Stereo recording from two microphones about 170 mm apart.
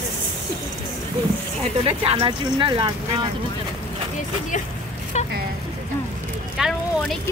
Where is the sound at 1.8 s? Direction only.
35° right (ahead or behind).